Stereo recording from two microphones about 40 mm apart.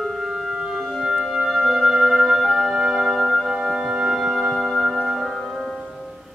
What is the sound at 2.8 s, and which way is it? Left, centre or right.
Music, right.